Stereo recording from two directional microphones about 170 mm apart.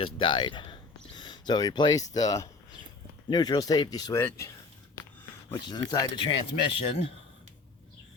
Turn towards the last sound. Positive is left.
turn(degrees=35)  # may be behind; listen again after turning